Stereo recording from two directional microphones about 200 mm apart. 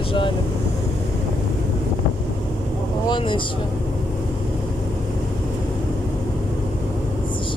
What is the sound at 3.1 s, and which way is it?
Speech, 25° left (ahead or behind).